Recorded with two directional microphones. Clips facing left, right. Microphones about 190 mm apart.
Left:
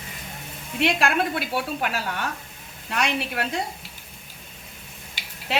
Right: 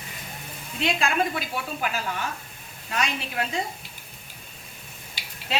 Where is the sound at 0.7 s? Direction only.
65° left (ahead or behind).